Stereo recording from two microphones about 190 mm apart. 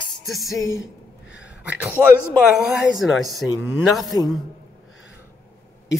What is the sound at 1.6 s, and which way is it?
A man's voice, 5° right (ahead or behind).